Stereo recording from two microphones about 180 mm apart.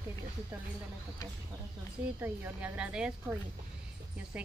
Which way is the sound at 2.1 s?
10° right (ahead or behind).